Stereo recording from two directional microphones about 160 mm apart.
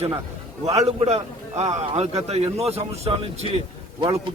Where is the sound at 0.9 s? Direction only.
40° right (ahead or behind).